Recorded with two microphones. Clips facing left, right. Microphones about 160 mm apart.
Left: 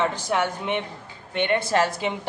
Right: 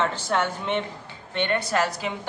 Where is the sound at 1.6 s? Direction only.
25° left (ahead or behind).